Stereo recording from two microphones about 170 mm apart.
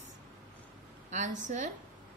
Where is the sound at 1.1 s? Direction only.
45° right (ahead or behind).